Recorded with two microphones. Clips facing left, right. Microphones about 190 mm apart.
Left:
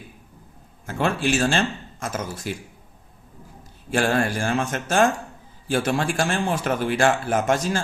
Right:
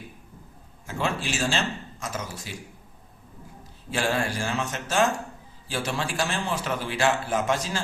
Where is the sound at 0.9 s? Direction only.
55° left (ahead or behind).